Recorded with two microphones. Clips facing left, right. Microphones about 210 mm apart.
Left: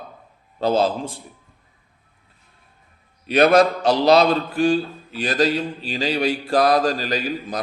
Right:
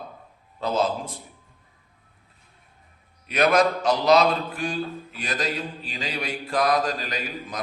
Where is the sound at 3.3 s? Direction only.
30° left (ahead or behind).